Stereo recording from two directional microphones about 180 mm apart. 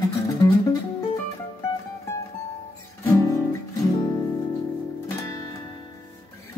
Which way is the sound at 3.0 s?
20° left (ahead or behind).